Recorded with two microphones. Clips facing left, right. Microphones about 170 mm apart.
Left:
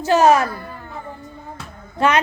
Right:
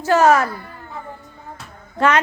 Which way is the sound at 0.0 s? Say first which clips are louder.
Even; 15° left (ahead or behind).